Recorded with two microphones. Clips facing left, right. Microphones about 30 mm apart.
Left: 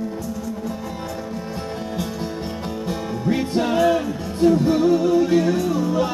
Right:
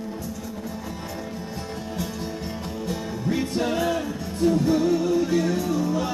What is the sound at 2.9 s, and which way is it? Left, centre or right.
Music, centre.